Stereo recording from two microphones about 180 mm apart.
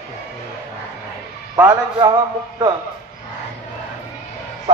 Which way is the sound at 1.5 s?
15° right (ahead or behind).